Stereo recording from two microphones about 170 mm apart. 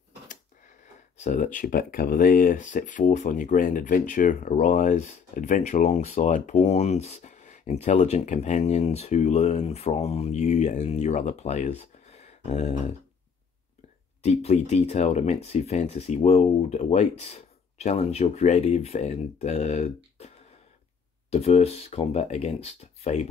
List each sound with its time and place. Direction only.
1.1 s speech: 45° left (ahead or behind)
14.2 s speech: 40° left (ahead or behind)